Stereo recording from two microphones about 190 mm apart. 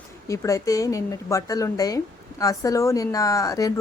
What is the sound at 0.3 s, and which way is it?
A woman's voice, 15° left (ahead or behind).